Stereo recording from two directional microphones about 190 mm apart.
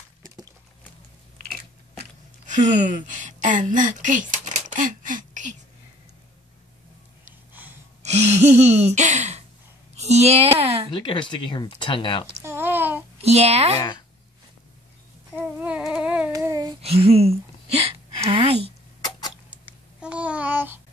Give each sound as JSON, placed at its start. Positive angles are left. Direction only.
{"t": 2.4, "sound": "speech", "side_deg": -40}
{"t": 8.0, "sound": "gasp", "side_deg": -35}
{"t": 9.9, "sound": "speech", "side_deg": -35}
{"t": 10.9, "sound": "speech", "side_deg": 25}
{"t": 12.4, "sound": "a sound", "side_deg": -10}
{"t": 13.2, "sound": "gasp", "side_deg": -35}
{"t": 15.3, "sound": "a sound", "side_deg": -5}
{"t": 16.3, "sound": "child singing", "side_deg": -20}
{"t": 16.8, "sound": "speech", "side_deg": -30}
{"t": 18.3, "sound": "gasp", "side_deg": -30}
{"t": 18.9, "sound": "a sound", "side_deg": 20}
{"t": 19.5, "sound": "babbling", "side_deg": -5}